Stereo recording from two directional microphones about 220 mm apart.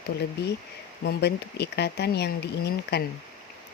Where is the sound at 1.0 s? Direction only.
50° left (ahead or behind).